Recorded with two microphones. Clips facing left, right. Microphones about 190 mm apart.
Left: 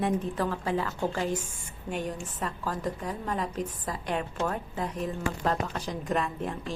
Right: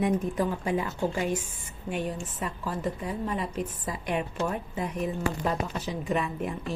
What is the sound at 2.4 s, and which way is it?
A woman's voice, 10° right (ahead or behind).